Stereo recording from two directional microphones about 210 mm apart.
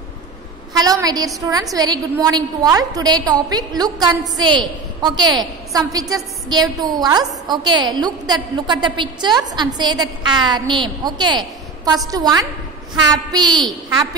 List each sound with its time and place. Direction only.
0.7 s a woman's voice: 20° right (ahead or behind)